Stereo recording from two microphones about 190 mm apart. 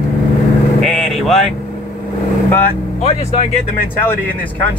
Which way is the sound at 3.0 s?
35° left (ahead or behind).